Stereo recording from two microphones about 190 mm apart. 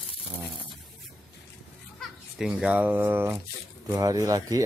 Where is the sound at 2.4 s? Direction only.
5° right (ahead or behind).